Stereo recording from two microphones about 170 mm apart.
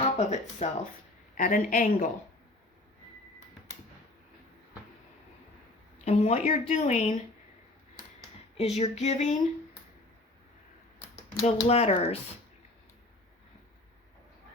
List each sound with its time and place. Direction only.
0.0 s a sound: 40° left (ahead or behind)
1.4 s speech: 50° left (ahead or behind)
6.1 s speech: 40° left (ahead or behind)
8.5 s female singing: 40° left (ahead or behind)
11.4 s female singing: 40° left (ahead or behind)